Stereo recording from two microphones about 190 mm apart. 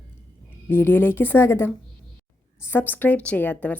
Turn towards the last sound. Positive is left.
turn(degrees=10)  # may be behind; listen again after turning